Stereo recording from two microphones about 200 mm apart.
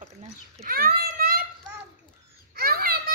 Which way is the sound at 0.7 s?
45° right (ahead or behind).